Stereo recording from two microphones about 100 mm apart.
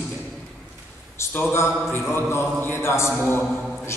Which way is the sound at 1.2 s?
25° left (ahead or behind).